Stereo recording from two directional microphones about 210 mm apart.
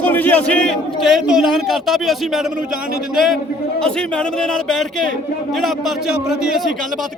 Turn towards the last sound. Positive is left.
turn(degrees=0)  # may be behind; listen again after turning